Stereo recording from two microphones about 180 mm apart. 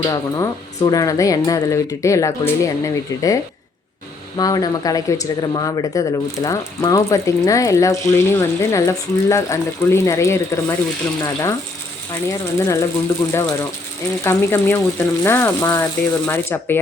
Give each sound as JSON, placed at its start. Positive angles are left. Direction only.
{"t": 0.0, "sound": "speech", "side_deg": 20}
{"t": 14.3, "sound": "speech", "side_deg": 15}